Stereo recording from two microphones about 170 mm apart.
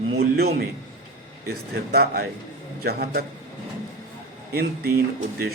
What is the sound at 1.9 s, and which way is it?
Speech, 65° right (ahead or behind).